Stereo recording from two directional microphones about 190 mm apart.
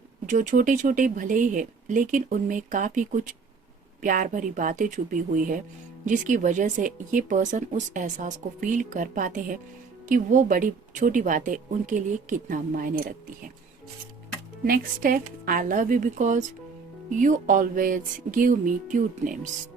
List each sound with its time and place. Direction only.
0.3 s speech: 45° right (ahead or behind)
14.6 s speech: 50° right (ahead or behind)